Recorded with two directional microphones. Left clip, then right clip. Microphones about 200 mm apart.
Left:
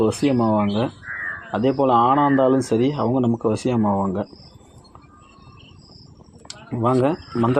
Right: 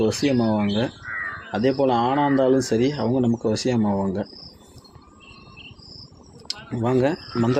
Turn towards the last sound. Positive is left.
turn(degrees=20)  # may be behind; listen again after turning